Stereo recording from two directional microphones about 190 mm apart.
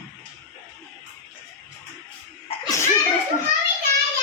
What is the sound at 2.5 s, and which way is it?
Laughter, 30° left (ahead or behind).